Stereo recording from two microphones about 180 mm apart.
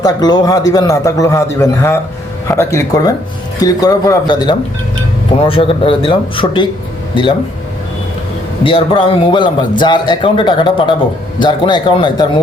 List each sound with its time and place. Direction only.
0.0 s a man's voice: 20° left (ahead or behind)
8.6 s a man's voice: 30° left (ahead or behind)